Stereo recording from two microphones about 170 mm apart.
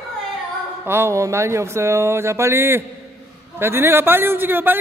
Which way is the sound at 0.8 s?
15° right (ahead or behind).